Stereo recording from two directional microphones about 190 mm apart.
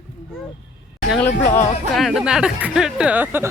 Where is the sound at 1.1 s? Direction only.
5° left (ahead or behind); by 3.4 s 10° right (ahead or behind).